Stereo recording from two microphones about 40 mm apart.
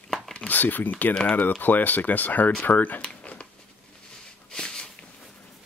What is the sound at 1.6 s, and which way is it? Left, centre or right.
Speech, left.